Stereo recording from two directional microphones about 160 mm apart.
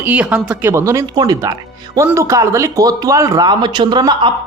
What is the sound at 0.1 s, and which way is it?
A woman's voice, 10° right (ahead or behind).